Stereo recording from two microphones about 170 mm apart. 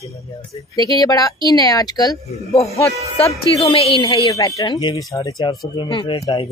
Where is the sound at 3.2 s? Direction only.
35° left (ahead or behind).